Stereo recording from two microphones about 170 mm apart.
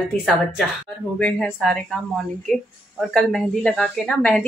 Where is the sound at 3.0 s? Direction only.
5° left (ahead or behind).